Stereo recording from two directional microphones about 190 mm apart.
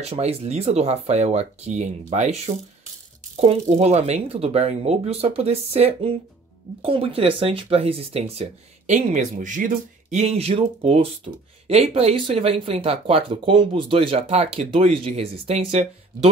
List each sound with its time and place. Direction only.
0.0 s speech: 35° right (ahead or behind)